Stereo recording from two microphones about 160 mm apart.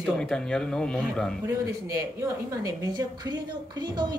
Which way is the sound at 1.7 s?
20° right (ahead or behind).